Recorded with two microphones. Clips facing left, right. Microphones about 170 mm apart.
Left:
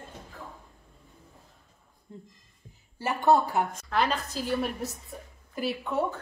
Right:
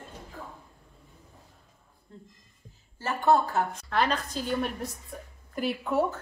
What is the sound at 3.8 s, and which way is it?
A woman's voice, centre (ahead or behind).